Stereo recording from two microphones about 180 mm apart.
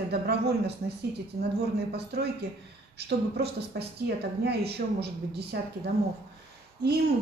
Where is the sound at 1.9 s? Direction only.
65° right (ahead or behind).